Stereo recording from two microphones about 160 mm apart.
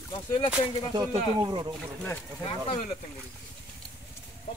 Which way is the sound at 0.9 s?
25° right (ahead or behind).